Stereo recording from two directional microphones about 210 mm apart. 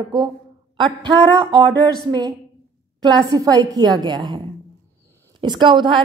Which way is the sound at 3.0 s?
20° right (ahead or behind).